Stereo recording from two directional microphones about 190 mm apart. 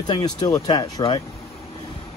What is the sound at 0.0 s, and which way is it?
Speech, 20° left (ahead or behind).